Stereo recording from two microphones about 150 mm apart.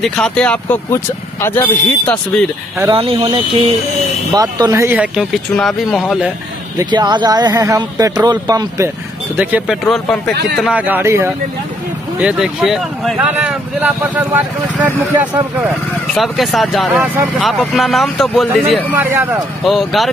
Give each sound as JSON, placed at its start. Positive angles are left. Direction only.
{"t": 0.0, "sound": "speech", "side_deg": 5}
{"t": 3.0, "sound": "speech", "side_deg": -35}
{"t": 4.3, "sound": "speech", "side_deg": -25}
{"t": 4.8, "sound": "speech", "side_deg": -10}
{"t": 6.8, "sound": "speech", "side_deg": -30}
{"t": 9.4, "sound": "speech", "side_deg": -10}
{"t": 9.8, "sound": "speech", "side_deg": 0}
{"t": 12.2, "sound": "speech", "side_deg": -5}
{"t": 16.2, "sound": "speech", "side_deg": 0}
{"t": 18.9, "sound": "speech", "side_deg": -15}
{"t": 19.6, "sound": "speech", "side_deg": 0}